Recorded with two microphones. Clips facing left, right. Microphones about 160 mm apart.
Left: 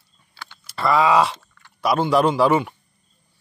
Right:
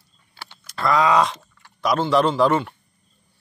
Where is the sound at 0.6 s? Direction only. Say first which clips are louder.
Left 1 dB; 5° left (ahead or behind).